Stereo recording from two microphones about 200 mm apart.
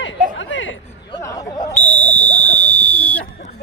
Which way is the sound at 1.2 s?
15° left (ahead or behind).